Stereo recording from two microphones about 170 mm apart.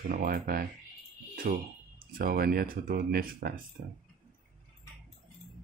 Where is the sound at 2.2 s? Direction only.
60° right (ahead or behind).